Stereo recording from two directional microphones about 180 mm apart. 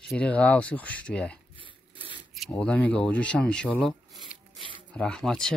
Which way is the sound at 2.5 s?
10° left (ahead or behind).